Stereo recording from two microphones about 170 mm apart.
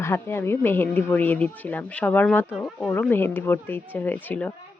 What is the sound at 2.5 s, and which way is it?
Speech, centre (ahead or behind).